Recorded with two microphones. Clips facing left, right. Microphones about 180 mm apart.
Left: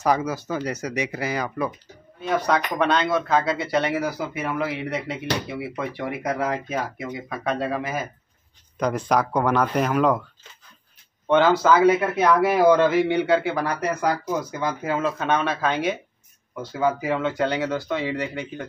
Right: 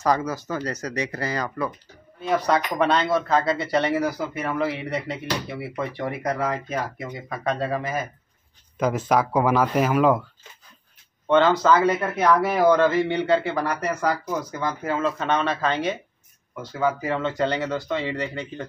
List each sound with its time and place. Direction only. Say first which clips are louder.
0.0 s a man's voice: left 1 dB; 10° left (ahead or behind)
2.2 s speech: even; centre (ahead or behind)
11.2 s a man's voice: even; 10° left (ahead or behind)